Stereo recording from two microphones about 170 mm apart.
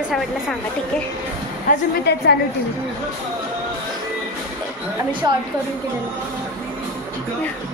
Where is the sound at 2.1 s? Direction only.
75° left (ahead or behind).